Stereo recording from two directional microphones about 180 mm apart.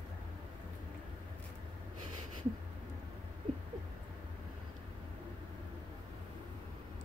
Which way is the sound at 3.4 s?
25° right (ahead or behind).